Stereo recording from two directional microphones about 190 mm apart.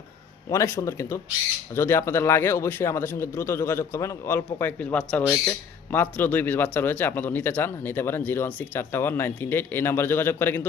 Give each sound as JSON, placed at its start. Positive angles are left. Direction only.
{"t": 0.5, "sound": "a man's voice", "side_deg": 15}